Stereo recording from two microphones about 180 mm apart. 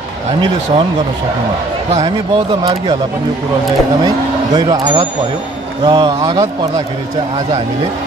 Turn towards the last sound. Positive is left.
turn(degrees=-25)  # may be behind; listen again after turning